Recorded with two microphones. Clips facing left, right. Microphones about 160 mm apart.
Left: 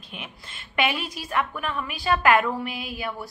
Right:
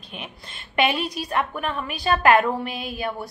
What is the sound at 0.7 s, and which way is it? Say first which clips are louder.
A woman's voice: right 4 dB; 25° right (ahead or behind).